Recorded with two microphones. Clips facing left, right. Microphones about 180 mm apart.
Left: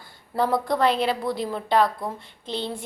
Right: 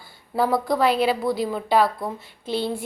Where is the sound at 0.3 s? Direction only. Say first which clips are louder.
Right 2 dB; 5° right (ahead or behind).